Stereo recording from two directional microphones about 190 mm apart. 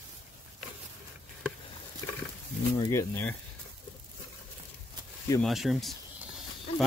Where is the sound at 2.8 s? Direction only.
15° left (ahead or behind).